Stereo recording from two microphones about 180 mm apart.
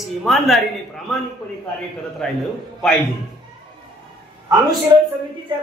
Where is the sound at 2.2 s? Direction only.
Centre (ahead or behind).